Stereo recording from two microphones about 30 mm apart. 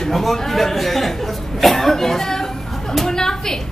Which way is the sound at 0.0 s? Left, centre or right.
Centre.